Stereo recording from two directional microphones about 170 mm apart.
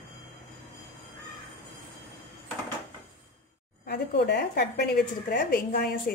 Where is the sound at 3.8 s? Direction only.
65° left (ahead or behind).